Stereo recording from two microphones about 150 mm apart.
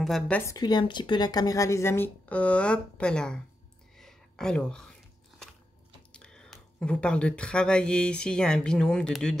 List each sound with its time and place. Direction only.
0.0 s a woman's voice: centre (ahead or behind)
0.5 s a woman's voice: 25° left (ahead or behind); by 3.3 s 5° left (ahead or behind)
3.9 s a sound: centre (ahead or behind)
6.1 s speech: 5° left (ahead or behind)